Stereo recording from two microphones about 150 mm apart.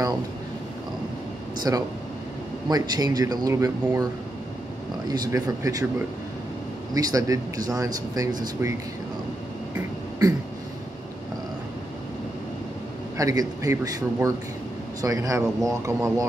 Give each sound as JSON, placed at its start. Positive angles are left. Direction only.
{"t": 1.7, "sound": "speech", "side_deg": -20}
{"t": 5.3, "sound": "speech", "side_deg": -25}
{"t": 6.9, "sound": "speech", "side_deg": -25}
{"t": 13.2, "sound": "speech", "side_deg": -25}